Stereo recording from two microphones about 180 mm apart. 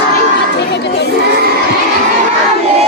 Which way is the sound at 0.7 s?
70° left (ahead or behind).